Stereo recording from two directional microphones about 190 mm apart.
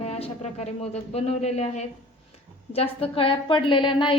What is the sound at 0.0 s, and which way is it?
A woman's voice, 35° left (ahead or behind).